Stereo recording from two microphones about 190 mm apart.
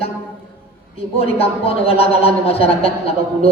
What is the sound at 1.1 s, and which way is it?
A man's voice, 30° left (ahead or behind).